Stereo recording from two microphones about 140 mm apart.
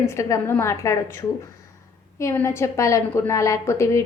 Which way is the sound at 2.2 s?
20° left (ahead or behind).